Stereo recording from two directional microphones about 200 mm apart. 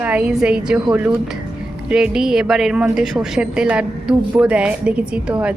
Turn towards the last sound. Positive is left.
turn(degrees=-5)  # may be behind; listen again after turning